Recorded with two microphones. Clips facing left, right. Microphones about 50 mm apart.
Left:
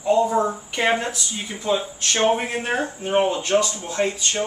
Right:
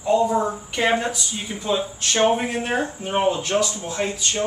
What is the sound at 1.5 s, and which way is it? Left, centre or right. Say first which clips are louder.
Speech: left 1 dB; centre.